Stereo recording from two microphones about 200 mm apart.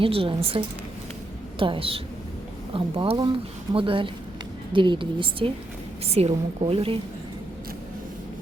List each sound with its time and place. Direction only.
0.0 s a woman's voice: 25° right (ahead or behind)